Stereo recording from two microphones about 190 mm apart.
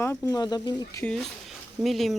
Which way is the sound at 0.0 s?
15° left (ahead or behind).